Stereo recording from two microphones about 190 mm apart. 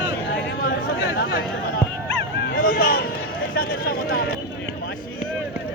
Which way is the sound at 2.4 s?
55° left (ahead or behind).